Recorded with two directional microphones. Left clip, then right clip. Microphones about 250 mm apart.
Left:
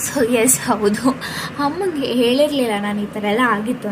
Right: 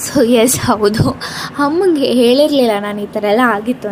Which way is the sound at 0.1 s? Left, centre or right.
Centre.